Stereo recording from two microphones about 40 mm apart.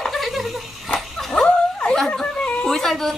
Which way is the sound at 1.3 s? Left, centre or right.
Left.